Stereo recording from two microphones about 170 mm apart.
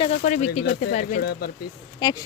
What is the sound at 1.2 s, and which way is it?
Speech, 65° left (ahead or behind).